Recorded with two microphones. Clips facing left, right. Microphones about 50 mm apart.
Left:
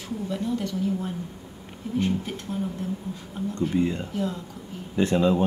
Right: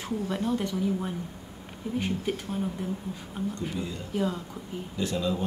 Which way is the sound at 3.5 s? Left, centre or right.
Left.